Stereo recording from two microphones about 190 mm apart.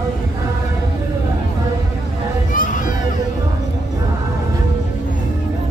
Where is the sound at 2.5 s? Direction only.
45° left (ahead or behind).